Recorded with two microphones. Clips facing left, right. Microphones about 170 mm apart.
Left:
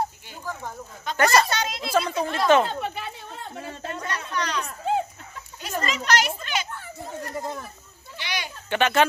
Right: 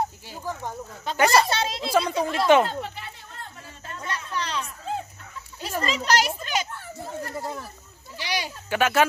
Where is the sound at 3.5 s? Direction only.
70° left (ahead or behind).